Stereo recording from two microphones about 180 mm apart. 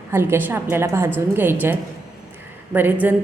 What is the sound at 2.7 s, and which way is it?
Speech, 10° right (ahead or behind).